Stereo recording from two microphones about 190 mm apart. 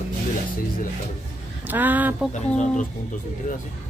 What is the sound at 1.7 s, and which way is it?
Speech, 10° right (ahead or behind).